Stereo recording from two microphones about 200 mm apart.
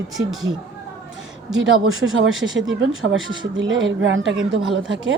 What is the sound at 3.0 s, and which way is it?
A woman's voice, 75° right (ahead or behind).